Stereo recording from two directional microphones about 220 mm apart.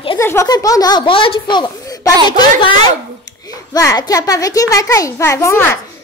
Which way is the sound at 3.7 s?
15° left (ahead or behind).